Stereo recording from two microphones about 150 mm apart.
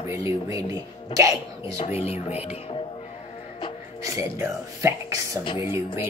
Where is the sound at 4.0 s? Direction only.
20° right (ahead or behind).